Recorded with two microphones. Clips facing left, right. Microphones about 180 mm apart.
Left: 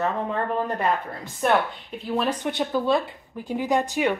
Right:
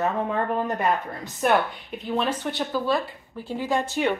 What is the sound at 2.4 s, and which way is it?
A woman's voice, 20° left (ahead or behind).